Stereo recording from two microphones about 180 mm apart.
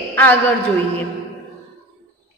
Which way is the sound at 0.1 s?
10° left (ahead or behind).